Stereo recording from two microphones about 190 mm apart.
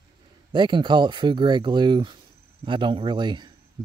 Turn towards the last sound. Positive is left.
turn(degrees=-25)  # may be behind; listen again after turning